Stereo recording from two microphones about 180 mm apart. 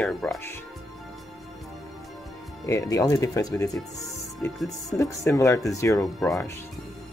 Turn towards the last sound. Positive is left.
turn(degrees=15)  # may be behind; listen again after turning